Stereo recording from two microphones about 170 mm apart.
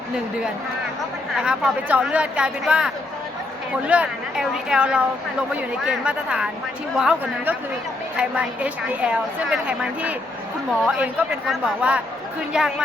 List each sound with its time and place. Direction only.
1.4 s a woman's voice: 5° right (ahead or behind)